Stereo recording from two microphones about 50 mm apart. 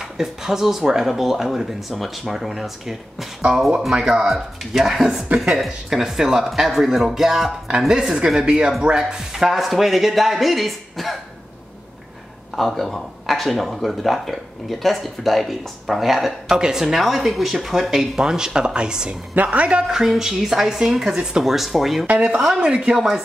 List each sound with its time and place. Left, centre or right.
0.0 s speech: centre
12.5 s speech: centre
19.3 s speech: right
19.9 s speech: centre
22.0 s speech: right
22.3 s speech: centre
22.6 s speech: right
22.9 s speech: centre